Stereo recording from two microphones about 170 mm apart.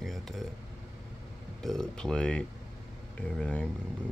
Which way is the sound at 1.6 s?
Centre (ahead or behind).